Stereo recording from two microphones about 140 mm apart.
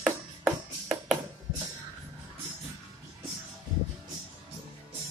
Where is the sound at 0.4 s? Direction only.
5° right (ahead or behind).